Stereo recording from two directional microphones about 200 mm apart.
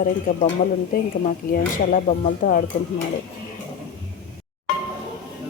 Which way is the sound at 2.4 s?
45° left (ahead or behind).